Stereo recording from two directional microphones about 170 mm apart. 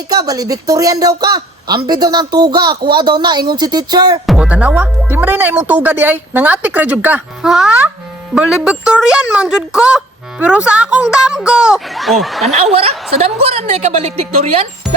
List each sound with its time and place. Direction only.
0.1 s a woman's voice: 20° right (ahead or behind)
4.3 s speech: 5° right (ahead or behind)
12.7 s a woman's voice: 35° right (ahead or behind)